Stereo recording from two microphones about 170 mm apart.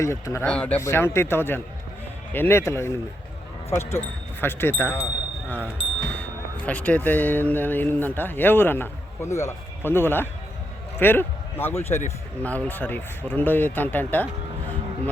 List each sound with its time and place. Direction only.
0.0 s speech: 15° left (ahead or behind)
6.1 s a man's voice: 10° left (ahead or behind)